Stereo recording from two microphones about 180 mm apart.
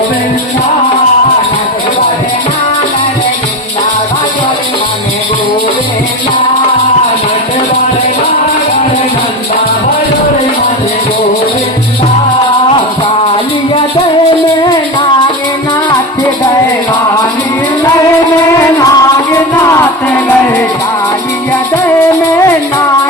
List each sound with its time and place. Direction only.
18.8 s music: 15° left (ahead or behind)